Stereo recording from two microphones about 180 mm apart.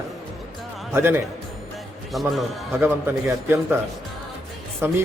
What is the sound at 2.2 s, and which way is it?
Speech, centre (ahead or behind).